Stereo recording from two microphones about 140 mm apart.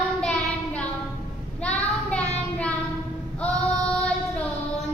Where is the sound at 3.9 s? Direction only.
5° left (ahead or behind).